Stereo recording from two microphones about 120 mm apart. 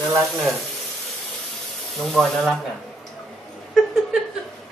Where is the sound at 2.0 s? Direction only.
5° left (ahead or behind).